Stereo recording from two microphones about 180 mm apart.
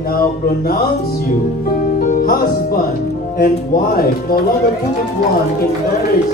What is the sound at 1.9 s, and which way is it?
Music, 50° left (ahead or behind).